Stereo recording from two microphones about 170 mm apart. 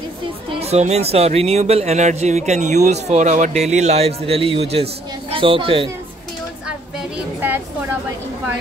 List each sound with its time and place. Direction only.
0.6 s speech: 40° right (ahead or behind)